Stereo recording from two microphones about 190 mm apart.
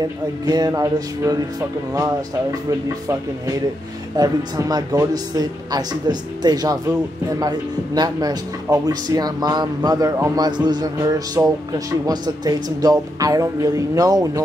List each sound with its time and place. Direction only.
0.0 s speech: 20° right (ahead or behind)
2.9 s speech: 15° right (ahead or behind)